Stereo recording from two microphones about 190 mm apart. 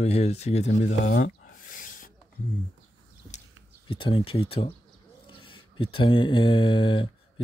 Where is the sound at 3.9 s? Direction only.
25° left (ahead or behind).